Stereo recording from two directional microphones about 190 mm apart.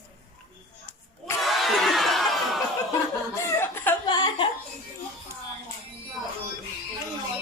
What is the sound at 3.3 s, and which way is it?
Chuckle, 10° left (ahead or behind).